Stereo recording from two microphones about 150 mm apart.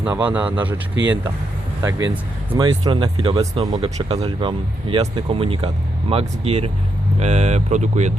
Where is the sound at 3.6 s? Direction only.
25° right (ahead or behind).